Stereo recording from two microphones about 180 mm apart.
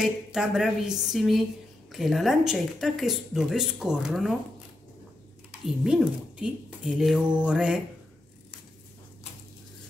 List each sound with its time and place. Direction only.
0.0 s speech: 5° right (ahead or behind)
5.9 s speech: 5° right (ahead or behind)